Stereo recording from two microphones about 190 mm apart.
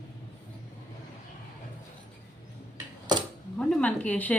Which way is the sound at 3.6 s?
5° left (ahead or behind).